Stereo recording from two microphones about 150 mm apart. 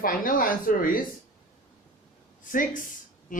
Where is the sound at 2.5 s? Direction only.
65° left (ahead or behind).